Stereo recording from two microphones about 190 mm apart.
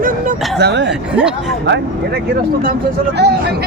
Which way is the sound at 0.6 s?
65° right (ahead or behind).